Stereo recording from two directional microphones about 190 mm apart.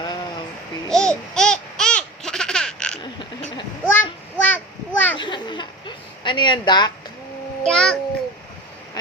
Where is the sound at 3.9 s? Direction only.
10° left (ahead or behind).